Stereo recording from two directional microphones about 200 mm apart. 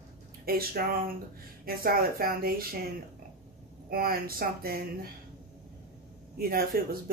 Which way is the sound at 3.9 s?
45° right (ahead or behind).